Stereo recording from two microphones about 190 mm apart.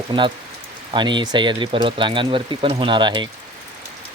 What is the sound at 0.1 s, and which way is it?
Speech, 25° right (ahead or behind).